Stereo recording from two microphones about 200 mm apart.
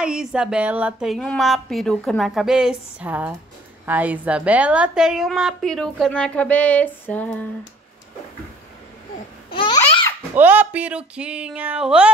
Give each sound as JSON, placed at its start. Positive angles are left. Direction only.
{"t": 0.0, "sound": "a woman's voice", "side_deg": -5}
{"t": 9.5, "sound": "babbling", "side_deg": 25}
{"t": 10.3, "sound": "speech", "side_deg": -10}